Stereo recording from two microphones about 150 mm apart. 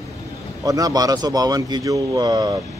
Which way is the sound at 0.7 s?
25° right (ahead or behind).